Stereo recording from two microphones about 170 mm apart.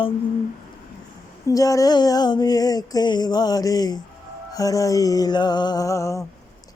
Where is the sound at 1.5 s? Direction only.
20° left (ahead or behind).